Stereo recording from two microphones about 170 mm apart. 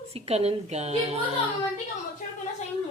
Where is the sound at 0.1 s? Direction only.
35° right (ahead or behind).